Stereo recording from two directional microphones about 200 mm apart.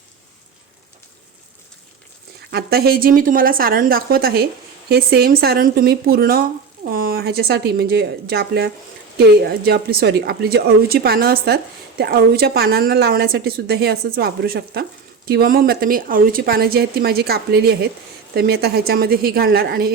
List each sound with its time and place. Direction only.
2.5 s speech: 55° right (ahead or behind)